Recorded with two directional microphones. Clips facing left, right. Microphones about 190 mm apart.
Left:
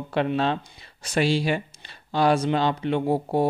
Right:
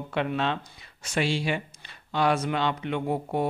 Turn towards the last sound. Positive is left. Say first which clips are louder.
# left 5 dB
turn(degrees=35)  # may be behind; listen again after turning